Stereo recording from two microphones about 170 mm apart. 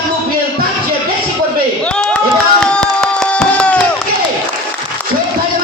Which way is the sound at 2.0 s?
5° left (ahead or behind).